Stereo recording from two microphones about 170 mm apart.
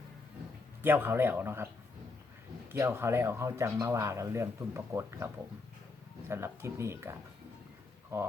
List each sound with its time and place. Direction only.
0.8 s speech: 10° right (ahead or behind)
2.7 s speech: 15° right (ahead or behind)